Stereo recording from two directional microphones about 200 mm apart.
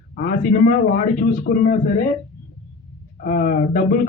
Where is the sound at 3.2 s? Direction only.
45° left (ahead or behind).